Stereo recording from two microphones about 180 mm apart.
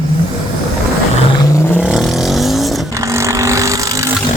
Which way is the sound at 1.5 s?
10° left (ahead or behind).